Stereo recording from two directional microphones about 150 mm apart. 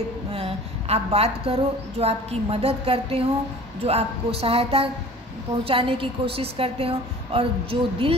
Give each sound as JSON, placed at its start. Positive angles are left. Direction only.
{"t": 0.3, "sound": "a woman's voice", "side_deg": -40}